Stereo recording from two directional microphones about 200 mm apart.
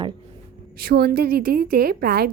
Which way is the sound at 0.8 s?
50° right (ahead or behind).